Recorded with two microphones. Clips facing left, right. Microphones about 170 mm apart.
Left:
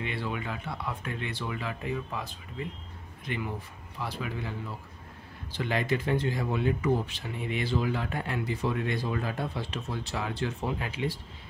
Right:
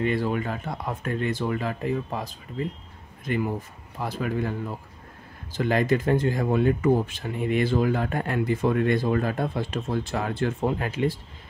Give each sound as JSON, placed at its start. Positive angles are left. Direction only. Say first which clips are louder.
{"t": 0.0, "sound": "speech", "louder": "right 9 dB", "side_deg": -45}